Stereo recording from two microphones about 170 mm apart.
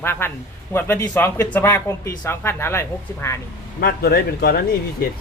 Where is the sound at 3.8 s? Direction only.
65° left (ahead or behind).